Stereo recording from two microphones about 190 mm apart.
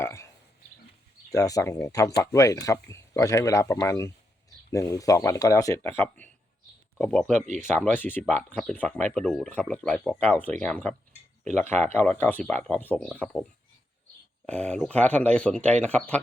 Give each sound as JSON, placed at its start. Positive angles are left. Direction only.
{"t": 0.0, "sound": "a sound", "side_deg": 15}
{"t": 1.3, "sound": "speech", "side_deg": 20}
{"t": 7.4, "sound": "speech", "side_deg": -40}
{"t": 7.8, "sound": "speech", "side_deg": 10}
{"t": 11.4, "sound": "speech", "side_deg": -40}
{"t": 11.8, "sound": "speech", "side_deg": 10}
{"t": 14.4, "sound": "speech", "side_deg": 5}